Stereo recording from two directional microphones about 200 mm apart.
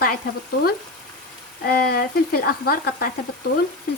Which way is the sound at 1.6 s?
50° left (ahead or behind).